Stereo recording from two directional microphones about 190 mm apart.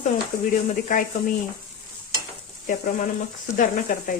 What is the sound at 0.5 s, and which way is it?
Speech, 45° left (ahead or behind).